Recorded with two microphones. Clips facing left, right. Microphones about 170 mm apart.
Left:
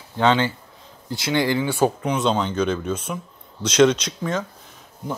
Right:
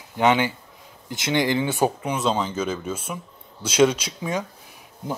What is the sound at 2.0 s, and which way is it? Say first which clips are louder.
Speech: left 2 dB; 5° right (ahead or behind).